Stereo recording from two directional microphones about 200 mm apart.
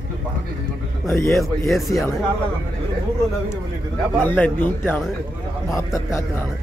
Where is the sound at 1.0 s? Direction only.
15° left (ahead or behind).